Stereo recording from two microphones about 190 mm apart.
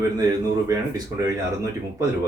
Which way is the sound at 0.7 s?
20° right (ahead or behind).